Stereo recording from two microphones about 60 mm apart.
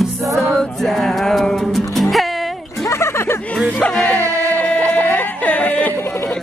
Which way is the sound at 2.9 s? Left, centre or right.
Left.